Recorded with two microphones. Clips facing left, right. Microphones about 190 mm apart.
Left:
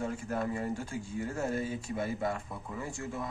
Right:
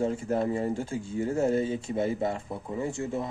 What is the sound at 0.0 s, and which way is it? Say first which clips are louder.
Speech: right 7 dB; 25° right (ahead or behind).